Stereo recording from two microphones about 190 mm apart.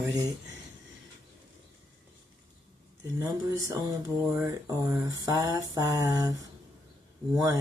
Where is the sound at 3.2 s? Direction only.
20° right (ahead or behind).